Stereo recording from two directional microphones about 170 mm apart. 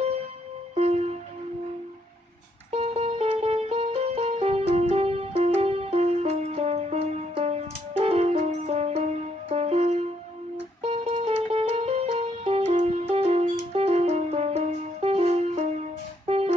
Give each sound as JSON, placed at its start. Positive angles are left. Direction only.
{"t": 2.7, "sound": "music", "side_deg": -35}